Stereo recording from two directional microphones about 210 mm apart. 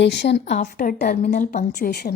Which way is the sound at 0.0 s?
55° left (ahead or behind).